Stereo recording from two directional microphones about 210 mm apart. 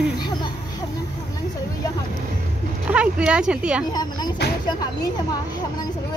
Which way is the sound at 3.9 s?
20° left (ahead or behind).